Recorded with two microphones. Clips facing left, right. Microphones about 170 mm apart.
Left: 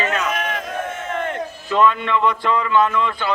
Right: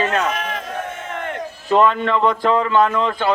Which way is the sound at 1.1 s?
15° right (ahead or behind).